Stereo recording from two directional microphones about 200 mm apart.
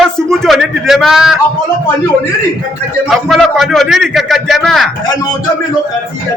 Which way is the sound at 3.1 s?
Centre (ahead or behind).